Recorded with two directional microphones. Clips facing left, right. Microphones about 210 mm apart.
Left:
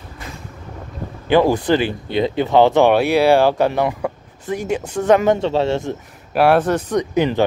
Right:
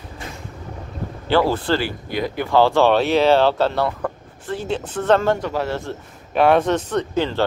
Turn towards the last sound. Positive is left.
turn(degrees=15)  # may be behind; listen again after turning